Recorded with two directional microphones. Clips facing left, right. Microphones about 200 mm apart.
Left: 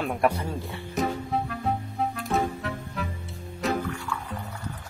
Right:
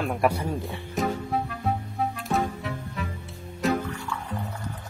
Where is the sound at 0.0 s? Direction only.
Centre (ahead or behind).